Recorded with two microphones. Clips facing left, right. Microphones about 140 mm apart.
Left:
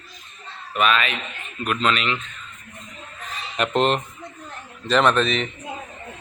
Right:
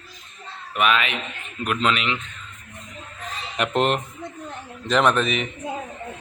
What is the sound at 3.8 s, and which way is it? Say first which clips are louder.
A man's voice: left 1 dB; 10° right (ahead or behind).